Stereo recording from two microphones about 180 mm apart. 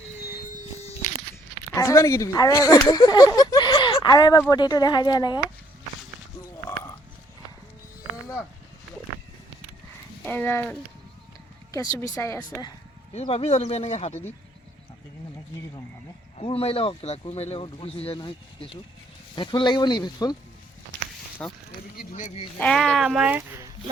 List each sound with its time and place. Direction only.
1.7 s speech: 15° left (ahead or behind)
10.2 s speech: 10° left (ahead or behind)
13.1 s speech: 35° left (ahead or behind)
16.4 s speech: 30° left (ahead or behind)
21.4 s speech: 5° left (ahead or behind)
21.9 s a sound: 40° left (ahead or behind)
22.5 s speech: 5° left (ahead or behind)